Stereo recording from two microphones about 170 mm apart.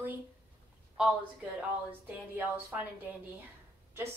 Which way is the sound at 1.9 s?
10° right (ahead or behind).